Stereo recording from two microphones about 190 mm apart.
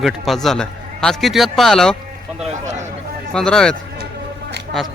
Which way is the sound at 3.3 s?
5° left (ahead or behind).